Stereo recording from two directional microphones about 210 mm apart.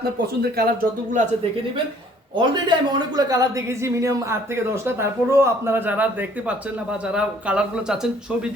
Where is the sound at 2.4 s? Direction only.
20° right (ahead or behind).